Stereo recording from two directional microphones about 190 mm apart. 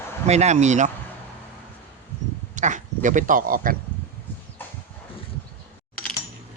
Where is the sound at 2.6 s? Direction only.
40° right (ahead or behind).